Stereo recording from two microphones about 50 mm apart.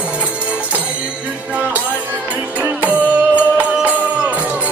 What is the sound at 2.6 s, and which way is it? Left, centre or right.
Music, right.